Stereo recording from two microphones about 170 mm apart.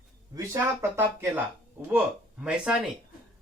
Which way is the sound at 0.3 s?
20° right (ahead or behind).